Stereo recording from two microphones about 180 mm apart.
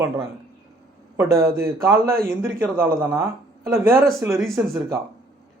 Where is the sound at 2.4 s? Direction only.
15° right (ahead or behind).